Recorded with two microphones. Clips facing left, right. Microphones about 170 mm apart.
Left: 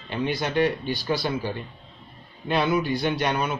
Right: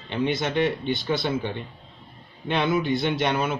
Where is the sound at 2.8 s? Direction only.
25° right (ahead or behind).